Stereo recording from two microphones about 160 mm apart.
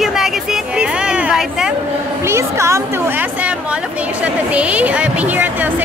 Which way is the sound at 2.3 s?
15° right (ahead or behind).